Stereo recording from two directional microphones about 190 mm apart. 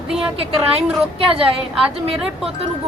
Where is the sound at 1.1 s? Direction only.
30° right (ahead or behind).